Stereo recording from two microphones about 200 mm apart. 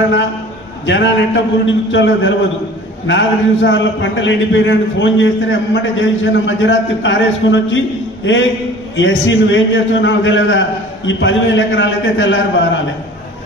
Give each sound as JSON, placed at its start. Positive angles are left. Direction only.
{"t": 0.8, "sound": "a man's voice", "side_deg": 65}